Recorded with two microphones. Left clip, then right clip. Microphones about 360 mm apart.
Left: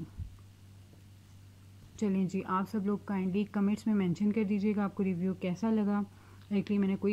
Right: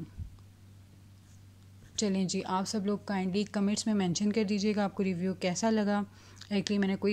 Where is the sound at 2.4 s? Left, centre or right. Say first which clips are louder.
Right 1 dB; centre.